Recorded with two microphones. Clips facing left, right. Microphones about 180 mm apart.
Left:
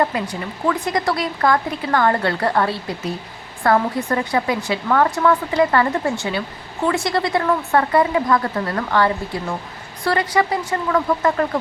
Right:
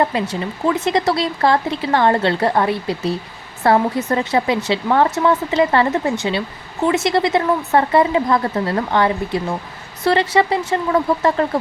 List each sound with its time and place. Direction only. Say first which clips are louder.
0.1 s speech: right 3 dB; 25° right (ahead or behind)